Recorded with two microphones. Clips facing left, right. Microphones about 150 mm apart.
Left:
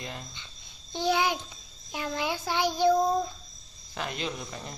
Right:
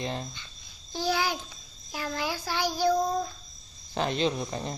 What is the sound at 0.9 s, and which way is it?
A child's voice, 20° left (ahead or behind).